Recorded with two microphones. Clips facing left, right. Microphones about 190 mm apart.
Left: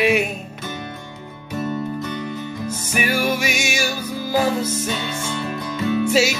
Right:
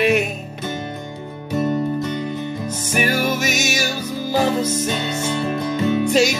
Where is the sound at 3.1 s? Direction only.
10° left (ahead or behind).